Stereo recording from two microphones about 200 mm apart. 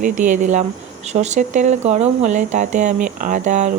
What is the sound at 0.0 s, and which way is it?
Speech, 40° right (ahead or behind).